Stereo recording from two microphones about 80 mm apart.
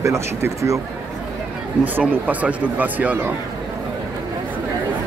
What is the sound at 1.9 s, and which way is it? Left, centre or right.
Speech, right.